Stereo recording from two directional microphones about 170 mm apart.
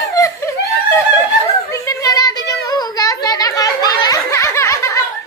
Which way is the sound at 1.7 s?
20° left (ahead or behind).